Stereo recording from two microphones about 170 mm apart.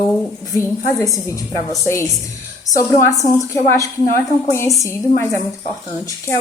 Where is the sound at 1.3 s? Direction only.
15° left (ahead or behind).